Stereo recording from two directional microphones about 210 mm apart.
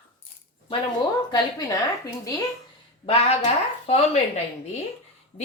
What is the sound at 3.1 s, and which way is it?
Speech, 30° left (ahead or behind).